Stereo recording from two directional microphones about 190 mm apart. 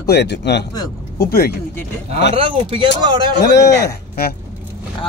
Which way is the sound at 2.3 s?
30° right (ahead or behind).